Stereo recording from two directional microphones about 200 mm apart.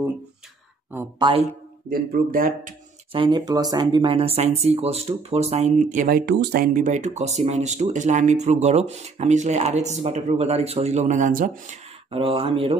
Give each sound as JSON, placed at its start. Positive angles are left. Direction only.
{"t": 1.2, "sound": "speech", "side_deg": -20}
{"t": 1.9, "sound": "speech", "side_deg": -45}
{"t": 3.1, "sound": "speech", "side_deg": -25}
{"t": 12.1, "sound": "speech", "side_deg": -30}